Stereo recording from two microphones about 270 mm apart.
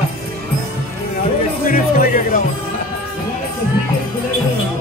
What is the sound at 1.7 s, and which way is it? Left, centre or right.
Speech, left.